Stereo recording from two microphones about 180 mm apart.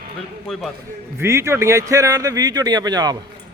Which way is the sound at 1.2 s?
15° right (ahead or behind).